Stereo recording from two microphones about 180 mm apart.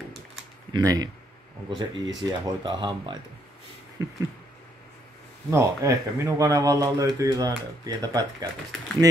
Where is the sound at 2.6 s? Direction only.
25° right (ahead or behind).